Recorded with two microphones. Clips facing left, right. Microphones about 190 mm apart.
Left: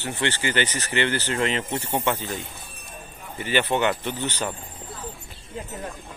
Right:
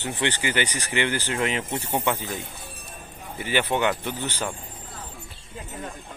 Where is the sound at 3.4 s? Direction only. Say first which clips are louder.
Left 1 dB; 10° right (ahead or behind).